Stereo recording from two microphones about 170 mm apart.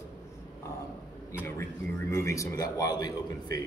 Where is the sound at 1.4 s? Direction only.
15° left (ahead or behind).